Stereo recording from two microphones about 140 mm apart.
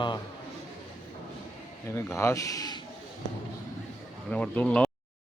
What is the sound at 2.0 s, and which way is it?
Speech, 20° left (ahead or behind).